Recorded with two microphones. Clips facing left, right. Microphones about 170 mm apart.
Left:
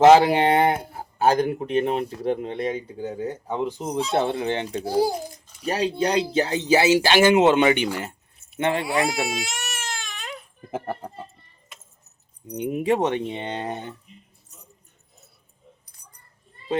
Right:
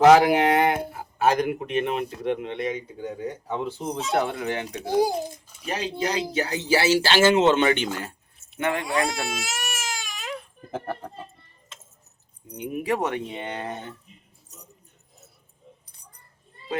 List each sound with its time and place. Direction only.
0.0 s speech: 30° left (ahead or behind)
3.4 s speech: 20° left (ahead or behind)
8.5 s speech: 25° left (ahead or behind)
8.8 s baby cry: 5° left (ahead or behind)
10.7 s speech: 10° left (ahead or behind)
12.5 s speech: 20° left (ahead or behind)